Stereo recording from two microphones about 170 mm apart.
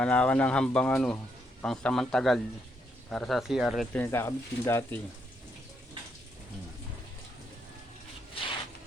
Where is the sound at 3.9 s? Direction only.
15° left (ahead or behind).